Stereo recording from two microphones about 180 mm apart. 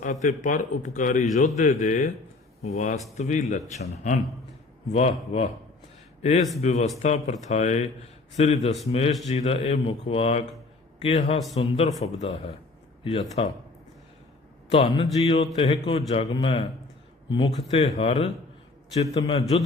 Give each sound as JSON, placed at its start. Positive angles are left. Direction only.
{"t": 0.0, "sound": "a man's voice", "side_deg": 40}
{"t": 6.6, "sound": "a man's voice", "side_deg": 40}
{"t": 14.7, "sound": "a man's voice", "side_deg": 30}